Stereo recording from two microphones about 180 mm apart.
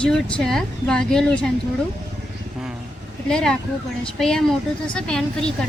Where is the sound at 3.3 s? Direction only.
5° left (ahead or behind).